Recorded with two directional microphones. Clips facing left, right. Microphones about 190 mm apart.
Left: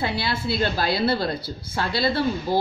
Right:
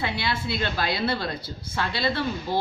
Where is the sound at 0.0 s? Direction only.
35° left (ahead or behind).